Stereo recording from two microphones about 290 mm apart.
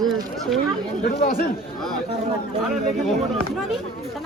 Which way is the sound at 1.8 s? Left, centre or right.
Centre.